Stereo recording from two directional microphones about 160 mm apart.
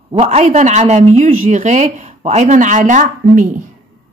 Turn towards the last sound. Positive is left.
turn(degrees=-55)  # may be behind; listen again after turning